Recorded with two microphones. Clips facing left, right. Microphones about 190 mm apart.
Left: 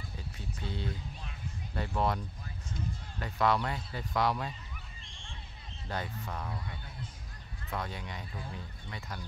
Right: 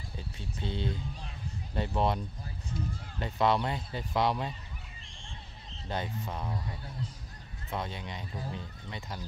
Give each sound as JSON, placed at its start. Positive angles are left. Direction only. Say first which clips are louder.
{"t": 0.6, "sound": "a sound", "louder": "right 4 dB", "side_deg": -25}
{"t": 1.8, "sound": "speech", "louder": "right 2 dB", "side_deg": -25}
{"t": 3.2, "sound": "speech", "louder": "right 2 dB", "side_deg": -25}
{"t": 5.9, "sound": "speech", "louder": "right 3 dB", "side_deg": -25}
{"t": 6.6, "sound": "speech", "louder": "right 4 dB", "side_deg": -35}
{"t": 7.7, "sound": "speech", "louder": "right 2 dB", "side_deg": -25}
{"t": 8.4, "sound": "speech", "louder": "right 6 dB", "side_deg": -35}